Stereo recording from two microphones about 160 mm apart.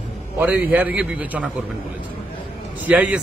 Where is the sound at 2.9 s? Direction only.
10° right (ahead or behind).